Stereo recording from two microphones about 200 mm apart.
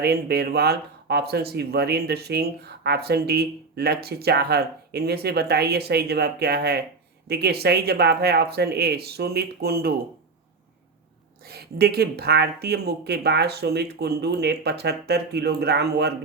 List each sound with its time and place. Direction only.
0.0 s speech: 55° right (ahead or behind)
11.4 s speech: 50° right (ahead or behind)